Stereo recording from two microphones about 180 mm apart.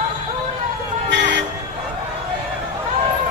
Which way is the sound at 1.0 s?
80° right.